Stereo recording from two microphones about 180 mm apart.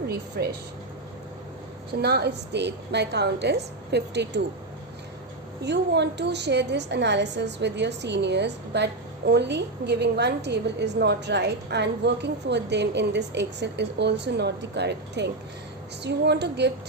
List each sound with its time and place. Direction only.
0.4 s speech: 55° right (ahead or behind)
2.0 s a woman's voice: 65° right (ahead or behind)
5.6 s a woman's voice: 70° right (ahead or behind)